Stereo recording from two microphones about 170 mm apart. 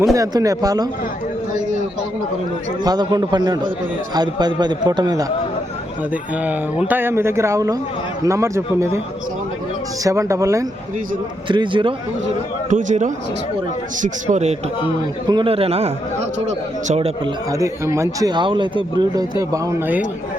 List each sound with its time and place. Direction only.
0.1 s speech: 20° right (ahead or behind)
2.8 s speech: 25° right (ahead or behind)
6.3 s speech: 10° right (ahead or behind)
10.0 s speech: 20° right (ahead or behind)
11.4 s speech: 30° right (ahead or behind)
12.7 s a man's voice: 45° right (ahead or behind)
15.3 s a man's voice: 30° right (ahead or behind)
17.2 s speech: 20° right (ahead or behind)